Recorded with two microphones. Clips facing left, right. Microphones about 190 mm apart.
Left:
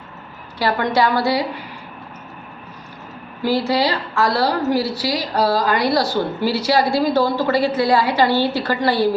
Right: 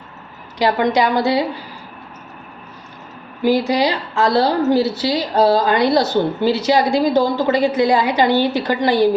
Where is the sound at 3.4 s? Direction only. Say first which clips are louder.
Right 3 dB; 15° right (ahead or behind).